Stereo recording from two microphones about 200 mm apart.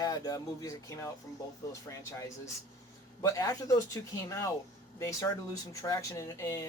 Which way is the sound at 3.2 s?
15° left (ahead or behind).